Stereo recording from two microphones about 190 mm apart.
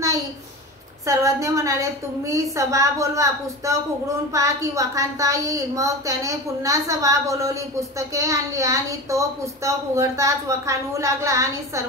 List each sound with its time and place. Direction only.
1.0 s a woman's voice: 15° right (ahead or behind)